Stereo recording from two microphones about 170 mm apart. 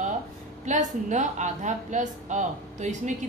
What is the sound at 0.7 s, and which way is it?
A woman's voice, 45° right (ahead or behind).